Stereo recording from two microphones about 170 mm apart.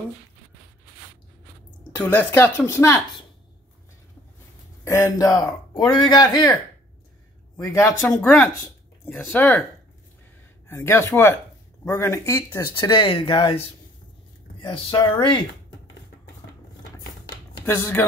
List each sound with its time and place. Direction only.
1.9 s speech: 10° left (ahead or behind)
4.8 s speech: 15° left (ahead or behind)
7.5 s speech: 20° left (ahead or behind)
10.7 s speech: 15° left (ahead or behind)
17.6 s speech: 15° left (ahead or behind)